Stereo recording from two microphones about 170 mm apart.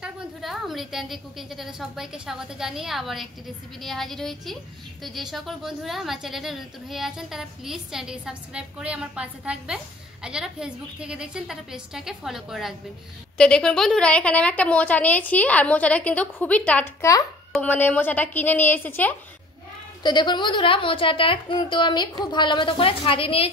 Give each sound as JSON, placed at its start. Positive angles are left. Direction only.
{"t": 0.0, "sound": "a woman's voice", "side_deg": -5}
{"t": 20.0, "sound": "a woman's voice", "side_deg": 25}